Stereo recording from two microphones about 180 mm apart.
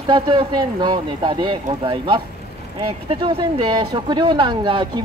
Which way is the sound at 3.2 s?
25° right (ahead or behind).